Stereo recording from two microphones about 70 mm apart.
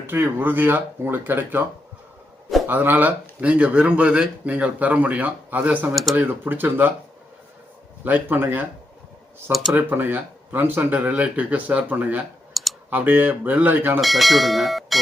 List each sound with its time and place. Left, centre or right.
0.1 s speech: right
2.6 s speech: right
5.9 s speech: centre
6.1 s speech: right
8.0 s speech: right
12.6 s clicking: centre
12.9 s speech: right
14.0 s speech: centre